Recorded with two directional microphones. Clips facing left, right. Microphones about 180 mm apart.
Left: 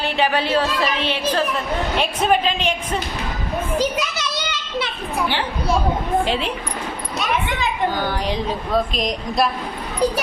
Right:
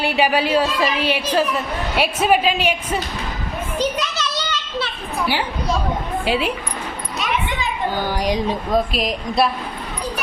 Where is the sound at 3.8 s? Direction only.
10° left (ahead or behind).